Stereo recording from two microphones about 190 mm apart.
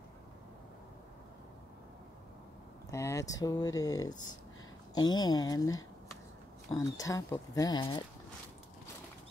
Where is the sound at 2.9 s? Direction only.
15° left (ahead or behind).